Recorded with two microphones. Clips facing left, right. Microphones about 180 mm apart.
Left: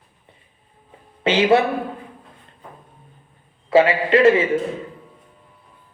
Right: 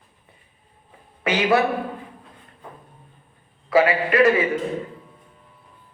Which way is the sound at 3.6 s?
25° left (ahead or behind).